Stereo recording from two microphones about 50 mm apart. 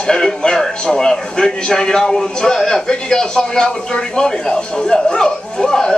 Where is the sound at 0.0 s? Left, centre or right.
Centre.